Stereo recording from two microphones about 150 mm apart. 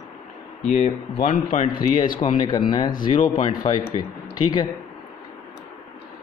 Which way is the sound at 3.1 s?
50° left (ahead or behind).